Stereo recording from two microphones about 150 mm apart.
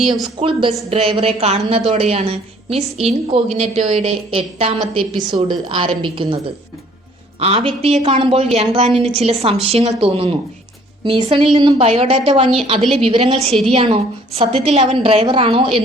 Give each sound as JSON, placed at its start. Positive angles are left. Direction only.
{"t": 0.0, "sound": "speech", "side_deg": 0}
{"t": 0.3, "sound": "a woman's voice", "side_deg": -35}